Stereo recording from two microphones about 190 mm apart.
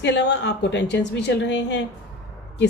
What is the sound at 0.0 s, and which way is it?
A woman's voice, 65° left (ahead or behind).